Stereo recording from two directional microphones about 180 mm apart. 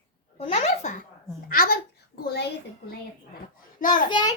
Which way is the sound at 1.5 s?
55° left (ahead or behind).